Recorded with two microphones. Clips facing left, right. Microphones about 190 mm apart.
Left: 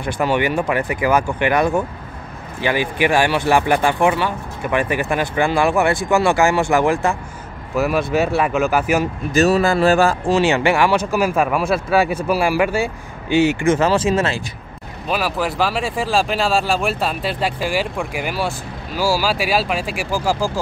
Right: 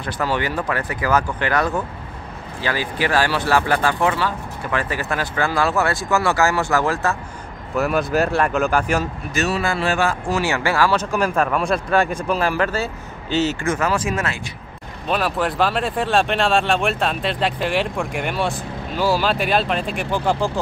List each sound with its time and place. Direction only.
0.0 s speech: 15° left (ahead or behind)
7.7 s speech: centre (ahead or behind)
9.3 s speech: 35° left (ahead or behind)
10.4 s speech: 20° left (ahead or behind)
13.7 s speech: 25° left (ahead or behind)
15.0 s speech: centre (ahead or behind)